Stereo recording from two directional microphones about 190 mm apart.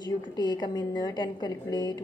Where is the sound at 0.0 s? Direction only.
25° left (ahead or behind).